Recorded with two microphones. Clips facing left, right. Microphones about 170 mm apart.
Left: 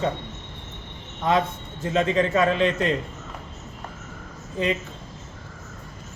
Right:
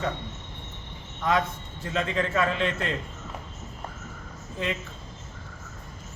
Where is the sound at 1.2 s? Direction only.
25° left (ahead or behind).